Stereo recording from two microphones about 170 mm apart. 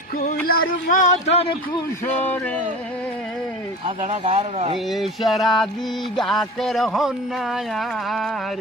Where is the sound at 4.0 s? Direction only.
40° right (ahead or behind).